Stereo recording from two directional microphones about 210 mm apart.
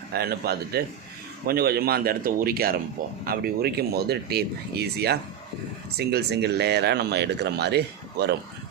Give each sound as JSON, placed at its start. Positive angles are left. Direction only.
{"t": 0.1, "sound": "speech", "side_deg": -50}